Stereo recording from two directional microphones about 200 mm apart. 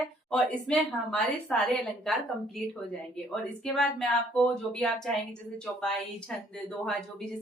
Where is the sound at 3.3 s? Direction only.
Centre (ahead or behind).